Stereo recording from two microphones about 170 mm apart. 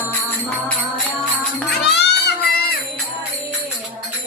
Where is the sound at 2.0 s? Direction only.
80° left.